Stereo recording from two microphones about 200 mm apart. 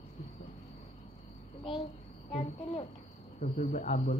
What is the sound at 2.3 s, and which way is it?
Speech, 30° left (ahead or behind).